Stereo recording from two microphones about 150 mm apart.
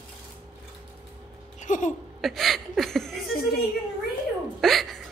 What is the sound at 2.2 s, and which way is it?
Chuckle, centre (ahead or behind).